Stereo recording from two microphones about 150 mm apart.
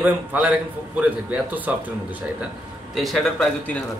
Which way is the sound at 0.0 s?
10° right (ahead or behind).